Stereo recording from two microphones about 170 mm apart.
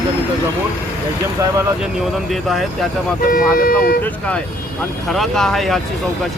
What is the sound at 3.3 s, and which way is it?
Speech, 55° left (ahead or behind).